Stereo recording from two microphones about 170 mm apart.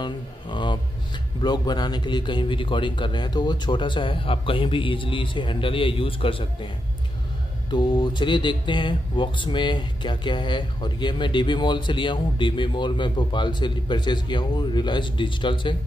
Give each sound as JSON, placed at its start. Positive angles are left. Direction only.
{"t": 0.0, "sound": "speech", "side_deg": 25}
{"t": 7.7, "sound": "speech", "side_deg": 25}